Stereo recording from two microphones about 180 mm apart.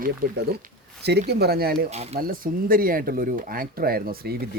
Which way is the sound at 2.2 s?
50° right (ahead or behind).